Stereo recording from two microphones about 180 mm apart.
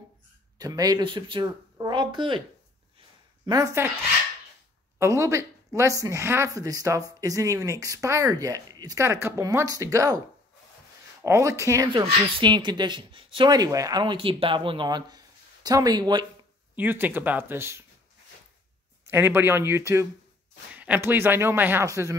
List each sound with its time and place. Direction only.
0.6 s speech: 20° right (ahead or behind)
3.4 s speech: 20° right (ahead or behind)
4.9 s speech: 15° right (ahead or behind)
11.2 s speech: 15° right (ahead or behind)
11.9 s speech: 30° right (ahead or behind)
16.7 s speech: 10° right (ahead or behind)
19.0 s speech: 10° right (ahead or behind)